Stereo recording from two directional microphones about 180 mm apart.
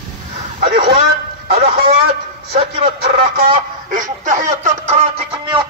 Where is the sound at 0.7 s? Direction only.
30° right (ahead or behind).